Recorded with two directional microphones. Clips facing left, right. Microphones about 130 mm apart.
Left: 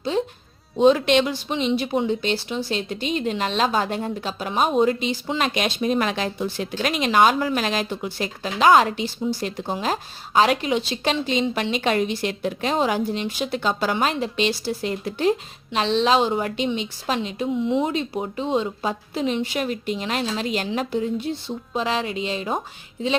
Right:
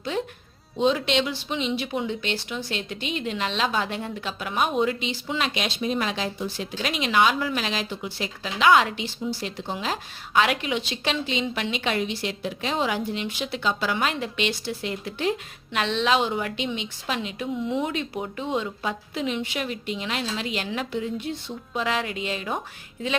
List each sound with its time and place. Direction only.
0.1 s a woman's voice: 30° left (ahead or behind)
0.8 s a woman's voice: 50° left (ahead or behind); by 22.6 s 30° left (ahead or behind)